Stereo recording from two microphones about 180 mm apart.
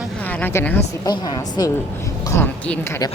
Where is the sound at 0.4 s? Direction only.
10° left (ahead or behind).